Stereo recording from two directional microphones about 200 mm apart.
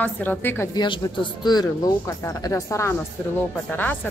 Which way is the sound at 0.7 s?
25° left (ahead or behind).